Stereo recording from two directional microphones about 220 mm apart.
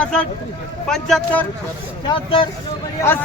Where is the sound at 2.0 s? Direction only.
25° left (ahead or behind).